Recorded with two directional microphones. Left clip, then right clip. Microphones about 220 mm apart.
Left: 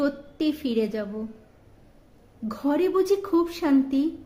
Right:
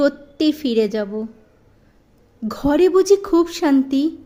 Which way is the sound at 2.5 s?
35° right (ahead or behind).